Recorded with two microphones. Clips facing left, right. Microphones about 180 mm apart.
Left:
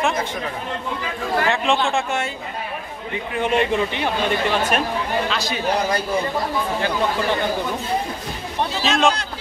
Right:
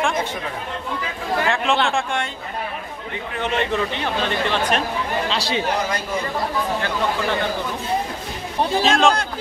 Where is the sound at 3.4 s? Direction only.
10° left (ahead or behind).